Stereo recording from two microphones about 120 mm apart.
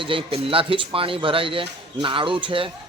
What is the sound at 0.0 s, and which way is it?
A man's voice, 50° right (ahead or behind).